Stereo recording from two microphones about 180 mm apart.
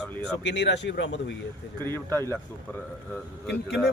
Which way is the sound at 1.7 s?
10° left (ahead or behind).